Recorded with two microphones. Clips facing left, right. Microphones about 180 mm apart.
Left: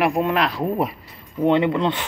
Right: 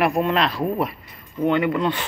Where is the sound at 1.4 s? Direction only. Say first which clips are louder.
Left 2 dB; 30° left (ahead or behind).